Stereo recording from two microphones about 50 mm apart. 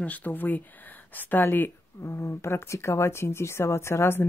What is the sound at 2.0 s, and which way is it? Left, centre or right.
Speech, left.